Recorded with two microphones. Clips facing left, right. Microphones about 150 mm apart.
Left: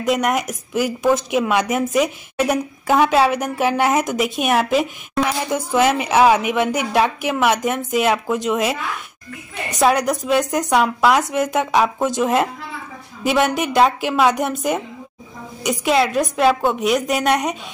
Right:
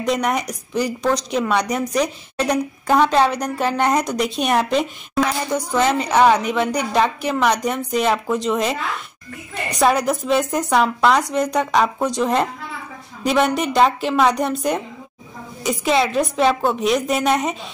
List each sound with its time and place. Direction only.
0.0 s a woman's voice: centre (ahead or behind)